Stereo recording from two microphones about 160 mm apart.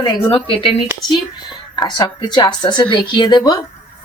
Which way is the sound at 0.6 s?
35° left (ahead or behind).